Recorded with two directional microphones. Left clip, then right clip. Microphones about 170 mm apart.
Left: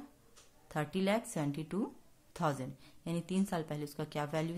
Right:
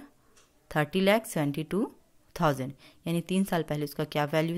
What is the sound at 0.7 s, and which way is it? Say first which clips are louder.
A woman's voice: right 10 dB; 40° right (ahead or behind).